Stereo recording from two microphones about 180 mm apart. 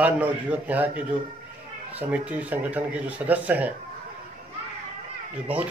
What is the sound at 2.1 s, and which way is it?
Speech, 10° right (ahead or behind).